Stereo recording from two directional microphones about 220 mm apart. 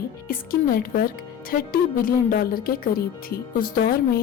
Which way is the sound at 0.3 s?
40° left (ahead or behind).